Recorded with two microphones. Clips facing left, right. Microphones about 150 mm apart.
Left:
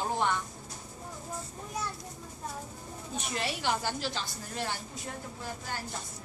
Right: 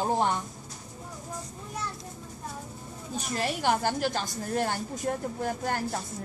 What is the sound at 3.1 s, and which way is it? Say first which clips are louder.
A woman's voice: right 4 dB; 45° right (ahead or behind).